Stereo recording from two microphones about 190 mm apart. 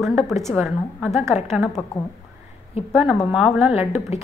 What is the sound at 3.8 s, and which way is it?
Speech, 35° left (ahead or behind).